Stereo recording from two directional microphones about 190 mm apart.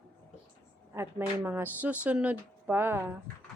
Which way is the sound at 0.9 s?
15° right (ahead or behind).